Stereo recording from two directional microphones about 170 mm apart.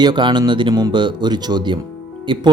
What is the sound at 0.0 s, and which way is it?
Speech, 25° right (ahead or behind).